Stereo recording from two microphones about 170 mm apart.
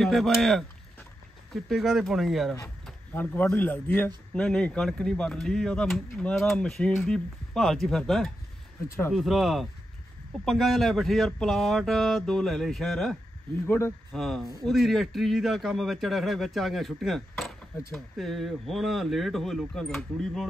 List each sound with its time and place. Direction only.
0.0 s speech: centre (ahead or behind)
8.8 s speech: 15° left (ahead or behind)
9.1 s speech: centre (ahead or behind)
13.7 s speech: 15° left (ahead or behind)
14.1 s speech: centre (ahead or behind)